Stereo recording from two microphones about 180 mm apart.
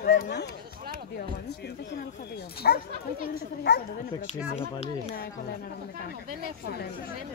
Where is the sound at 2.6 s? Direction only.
60° left (ahead or behind).